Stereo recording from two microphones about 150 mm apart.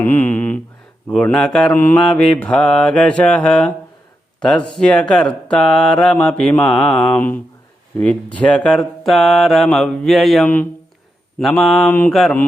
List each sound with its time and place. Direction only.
0.0 s mantra: 15° left (ahead or behind)
1.0 s speech: 5° left (ahead or behind)
1.8 s mantra: 15° left (ahead or behind)
4.4 s speech: 5° left (ahead or behind)
7.2 s mantra: 15° left (ahead or behind)
7.9 s speech: 10° left (ahead or behind)
10.4 s mantra: 10° left (ahead or behind)
11.3 s speech: centre (ahead or behind)
11.9 s mantra: 10° left (ahead or behind)
12.1 s speech: centre (ahead or behind)